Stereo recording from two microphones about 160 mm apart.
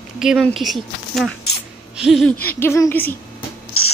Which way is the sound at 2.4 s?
15° left (ahead or behind).